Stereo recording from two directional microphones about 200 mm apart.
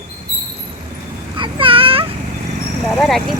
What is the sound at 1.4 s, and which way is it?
Speech, 25° right (ahead or behind).